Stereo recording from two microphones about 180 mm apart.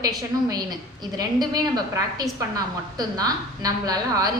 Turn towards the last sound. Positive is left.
turn(degrees=-20)  # may be behind; listen again after turning